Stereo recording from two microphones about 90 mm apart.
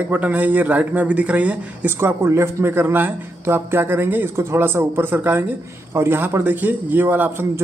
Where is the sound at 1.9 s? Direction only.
25° right (ahead or behind).